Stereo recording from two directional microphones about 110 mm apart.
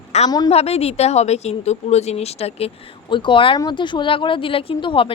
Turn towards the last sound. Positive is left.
turn(degrees=50)  # may be behind; listen again after turning